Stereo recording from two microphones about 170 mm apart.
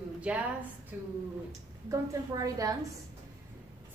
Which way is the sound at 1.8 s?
20° right (ahead or behind).